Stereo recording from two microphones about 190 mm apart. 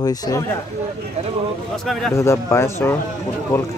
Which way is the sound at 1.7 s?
Centre (ahead or behind).